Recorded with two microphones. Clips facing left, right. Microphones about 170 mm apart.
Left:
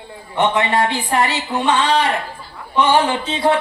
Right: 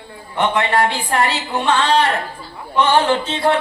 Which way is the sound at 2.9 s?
15° left (ahead or behind).